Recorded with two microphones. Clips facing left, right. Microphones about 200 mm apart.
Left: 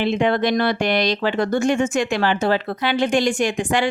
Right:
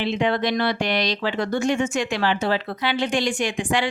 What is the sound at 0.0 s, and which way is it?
A woman's voice, 50° left (ahead or behind).